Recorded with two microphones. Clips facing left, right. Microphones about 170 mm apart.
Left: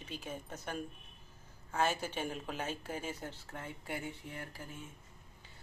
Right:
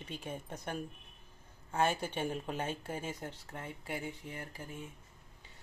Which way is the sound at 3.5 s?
5° right (ahead or behind).